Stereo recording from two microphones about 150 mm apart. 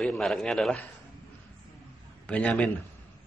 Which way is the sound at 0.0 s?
Centre (ahead or behind).